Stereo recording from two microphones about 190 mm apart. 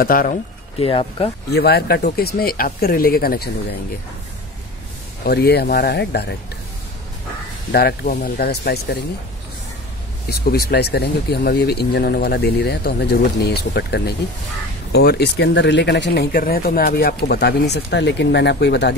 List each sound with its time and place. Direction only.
0.0 s speech: 50° left (ahead or behind)
0.7 s speech: 30° left (ahead or behind)
1.5 s speech: 55° left (ahead or behind)
5.2 s speech: 55° left (ahead or behind)
7.7 s speech: 55° left (ahead or behind)
10.4 s speech: 55° left (ahead or behind)